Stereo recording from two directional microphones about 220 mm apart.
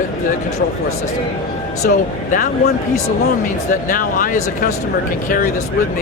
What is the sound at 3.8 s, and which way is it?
Speech, 40° left (ahead or behind).